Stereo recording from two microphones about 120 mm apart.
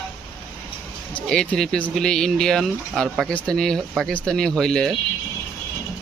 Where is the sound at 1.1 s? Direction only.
10° left (ahead or behind).